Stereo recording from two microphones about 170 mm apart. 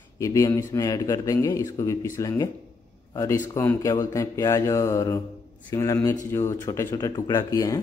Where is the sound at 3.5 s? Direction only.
15° left (ahead or behind).